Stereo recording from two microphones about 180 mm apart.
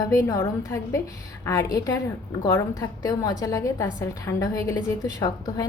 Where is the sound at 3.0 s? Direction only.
20° left (ahead or behind).